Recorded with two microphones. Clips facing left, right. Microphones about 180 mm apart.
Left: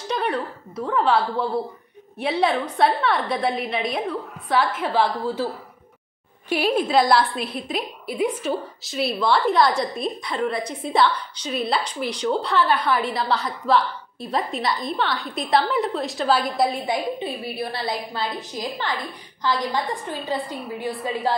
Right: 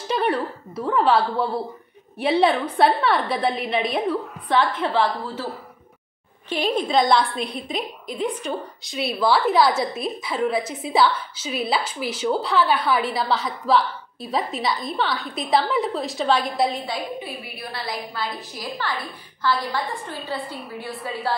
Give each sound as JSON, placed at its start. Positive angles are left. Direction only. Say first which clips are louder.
{"t": 0.1, "sound": "a woman's voice", "louder": "right 2 dB", "side_deg": 0}
{"t": 4.8, "sound": "a woman's voice", "louder": "left 1 dB", "side_deg": 10}
{"t": 6.5, "sound": "a woman's voice", "louder": "left 1 dB", "side_deg": 10}
{"t": 16.8, "sound": "a woman's voice", "louder": "left 4 dB", "side_deg": 20}